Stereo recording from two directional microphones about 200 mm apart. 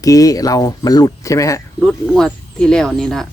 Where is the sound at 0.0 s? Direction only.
15° left (ahead or behind).